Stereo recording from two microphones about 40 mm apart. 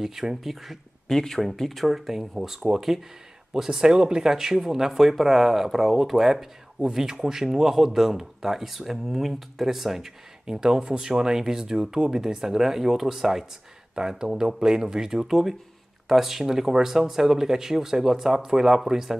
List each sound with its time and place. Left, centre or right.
0.0 s speech: centre
1.0 s speech: centre